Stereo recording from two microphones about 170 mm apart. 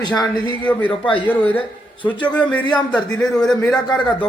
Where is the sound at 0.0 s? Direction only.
25° left (ahead or behind).